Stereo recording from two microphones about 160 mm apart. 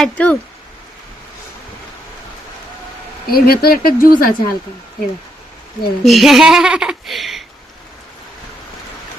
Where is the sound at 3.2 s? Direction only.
75° left (ahead or behind).